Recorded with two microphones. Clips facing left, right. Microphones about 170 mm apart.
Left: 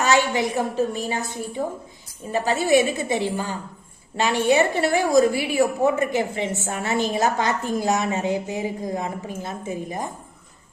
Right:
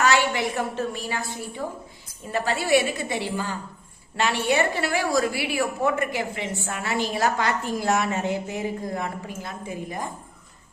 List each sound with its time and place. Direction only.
0.0 s a woman's voice: 20° left (ahead or behind)
2.3 s a woman's voice: 15° left (ahead or behind)